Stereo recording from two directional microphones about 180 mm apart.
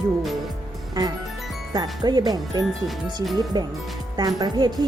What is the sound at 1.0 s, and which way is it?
Speech, 20° right (ahead or behind).